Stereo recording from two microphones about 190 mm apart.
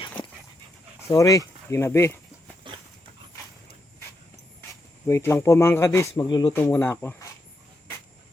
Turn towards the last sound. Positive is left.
turn(degrees=10)  # may be behind; listen again after turning